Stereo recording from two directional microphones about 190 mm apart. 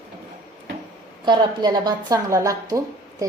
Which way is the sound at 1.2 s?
25° right (ahead or behind).